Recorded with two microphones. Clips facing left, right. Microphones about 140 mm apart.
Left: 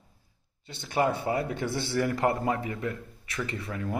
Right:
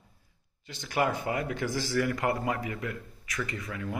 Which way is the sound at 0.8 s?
30° left (ahead or behind).